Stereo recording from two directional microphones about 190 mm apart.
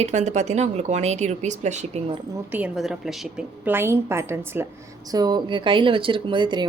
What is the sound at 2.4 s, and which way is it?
A woman's voice, 10° right (ahead or behind).